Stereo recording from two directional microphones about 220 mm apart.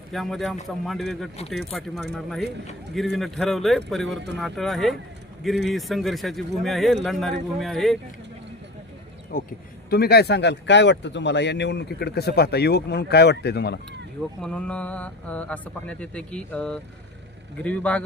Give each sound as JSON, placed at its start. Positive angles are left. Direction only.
{"t": 0.1, "sound": "speech", "side_deg": 0}
{"t": 9.3, "sound": "speech", "side_deg": 40}
{"t": 14.4, "sound": "speech", "side_deg": 5}